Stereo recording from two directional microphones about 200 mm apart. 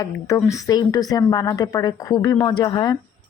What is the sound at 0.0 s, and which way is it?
A woman's voice, 15° left (ahead or behind).